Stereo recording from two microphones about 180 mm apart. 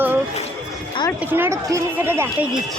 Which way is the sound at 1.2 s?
10° right (ahead or behind).